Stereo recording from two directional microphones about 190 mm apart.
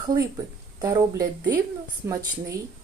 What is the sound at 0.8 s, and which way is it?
Speech, 20° right (ahead or behind).